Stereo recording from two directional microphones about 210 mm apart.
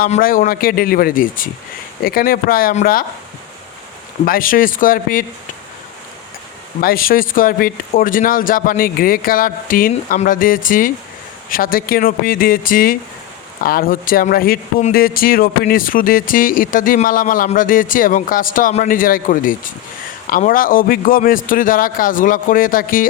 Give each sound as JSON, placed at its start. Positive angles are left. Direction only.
{"t": 0.0, "sound": "speech", "side_deg": 45}
{"t": 4.3, "sound": "speech", "side_deg": 40}
{"t": 6.8, "sound": "speech", "side_deg": 45}